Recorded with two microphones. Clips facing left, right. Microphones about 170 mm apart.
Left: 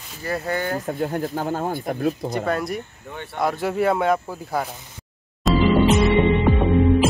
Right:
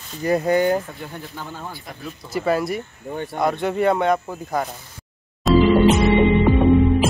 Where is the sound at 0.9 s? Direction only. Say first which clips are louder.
Left 10 dB; 45° left (ahead or behind).